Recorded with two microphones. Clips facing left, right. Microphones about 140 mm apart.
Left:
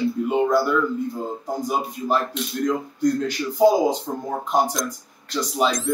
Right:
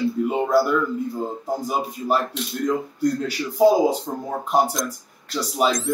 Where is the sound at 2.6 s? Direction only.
5° right (ahead or behind).